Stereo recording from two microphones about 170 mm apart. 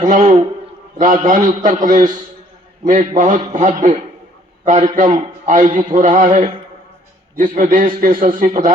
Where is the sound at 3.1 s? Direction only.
50° right (ahead or behind).